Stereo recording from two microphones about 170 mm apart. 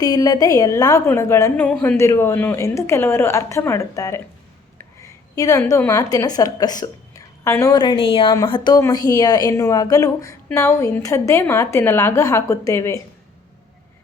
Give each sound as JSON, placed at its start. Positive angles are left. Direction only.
{"t": 0.0, "sound": "a woman's voice", "side_deg": 20}
{"t": 5.3, "sound": "a woman's voice", "side_deg": 20}